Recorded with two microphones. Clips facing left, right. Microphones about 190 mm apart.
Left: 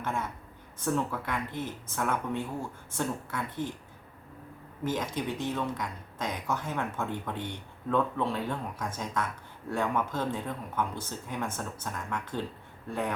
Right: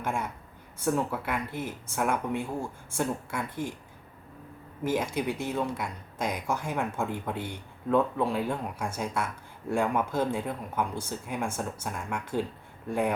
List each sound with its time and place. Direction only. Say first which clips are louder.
0.0 s a woman's voice: right 2 dB; 10° right (ahead or behind)
4.8 s speech: right 3 dB; 10° right (ahead or behind)